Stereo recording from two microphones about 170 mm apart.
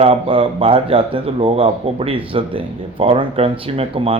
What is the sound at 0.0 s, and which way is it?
Speech, 35° right (ahead or behind).